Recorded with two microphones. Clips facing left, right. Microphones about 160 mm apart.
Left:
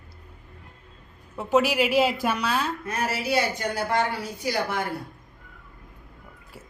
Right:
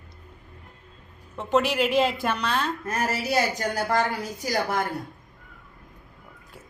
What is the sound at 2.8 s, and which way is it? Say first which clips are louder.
Speech: right 1 dB; 40° right (ahead or behind).